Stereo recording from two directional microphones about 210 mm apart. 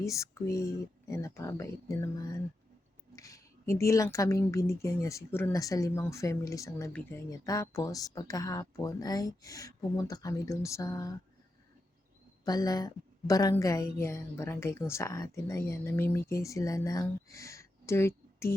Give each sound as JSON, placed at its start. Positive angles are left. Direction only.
{"t": 0.0, "sound": "speech", "side_deg": 15}
{"t": 3.2, "sound": "a sound", "side_deg": 15}
{"t": 3.8, "sound": "speech", "side_deg": 15}
{"t": 12.5, "sound": "speech", "side_deg": 20}